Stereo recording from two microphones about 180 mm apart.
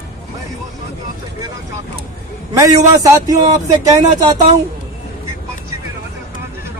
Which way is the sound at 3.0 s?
20° right (ahead or behind).